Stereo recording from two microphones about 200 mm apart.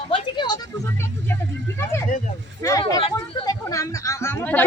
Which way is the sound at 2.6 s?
15° left (ahead or behind).